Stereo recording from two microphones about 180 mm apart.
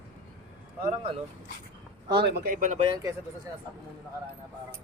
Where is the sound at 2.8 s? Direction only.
25° right (ahead or behind).